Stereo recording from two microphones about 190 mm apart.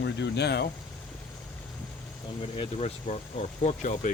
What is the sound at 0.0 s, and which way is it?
Speech, 60° left (ahead or behind).